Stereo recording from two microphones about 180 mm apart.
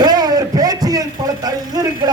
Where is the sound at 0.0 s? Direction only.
20° right (ahead or behind).